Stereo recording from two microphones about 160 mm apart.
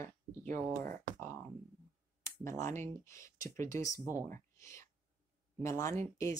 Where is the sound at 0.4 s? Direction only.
55° right (ahead or behind).